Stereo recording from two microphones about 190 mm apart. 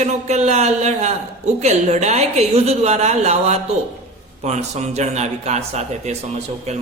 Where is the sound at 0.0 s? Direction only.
35° right (ahead or behind).